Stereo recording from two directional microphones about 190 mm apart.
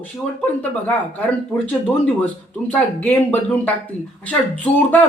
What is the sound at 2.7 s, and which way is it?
Speech, 10° left (ahead or behind).